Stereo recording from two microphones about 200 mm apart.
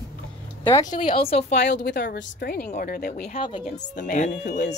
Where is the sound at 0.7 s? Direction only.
15° left (ahead or behind).